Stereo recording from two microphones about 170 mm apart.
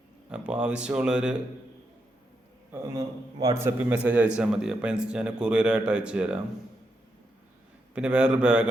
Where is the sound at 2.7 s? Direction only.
20° right (ahead or behind).